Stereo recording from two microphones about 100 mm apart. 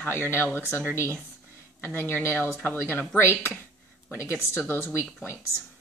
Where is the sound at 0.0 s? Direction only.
20° left (ahead or behind).